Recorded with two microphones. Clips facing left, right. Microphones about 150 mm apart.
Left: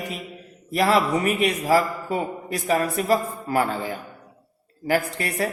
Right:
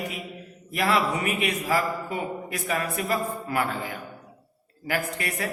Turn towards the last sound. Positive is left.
turn(degrees=35)  # may be behind; listen again after turning